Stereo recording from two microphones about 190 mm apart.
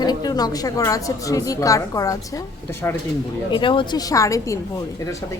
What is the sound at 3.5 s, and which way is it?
A woman's voice, 25° left (ahead or behind).